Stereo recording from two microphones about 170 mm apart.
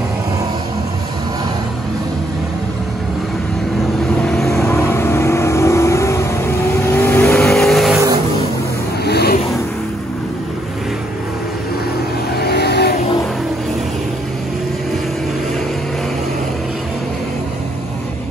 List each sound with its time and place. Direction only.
4.3 s vehicle: centre (ahead or behind)
4.6 s vehicle: 15° left (ahead or behind)
7.4 s vehicle: centre (ahead or behind)
9.0 s a sound: 70° left (ahead or behind)
12.4 s vehicle: 70° left (ahead or behind)